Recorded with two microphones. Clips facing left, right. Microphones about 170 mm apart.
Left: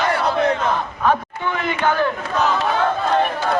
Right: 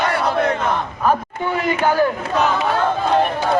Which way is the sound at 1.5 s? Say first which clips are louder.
Right 2 dB; 40° right (ahead or behind).